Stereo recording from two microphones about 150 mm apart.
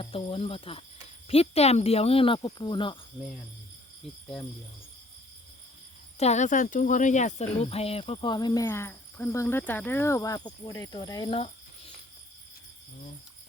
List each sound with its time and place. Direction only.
0.0 s speech: 35° left (ahead or behind)
6.1 s speech: 50° left (ahead or behind); by 11.3 s 25° left (ahead or behind)
11.3 s jingle bell: 40° left (ahead or behind)